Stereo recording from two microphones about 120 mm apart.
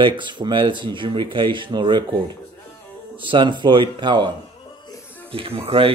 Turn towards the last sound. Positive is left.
turn(degrees=-50)  # may be behind; listen again after turning